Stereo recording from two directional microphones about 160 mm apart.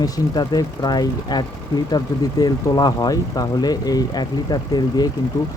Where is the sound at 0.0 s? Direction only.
25° left (ahead or behind).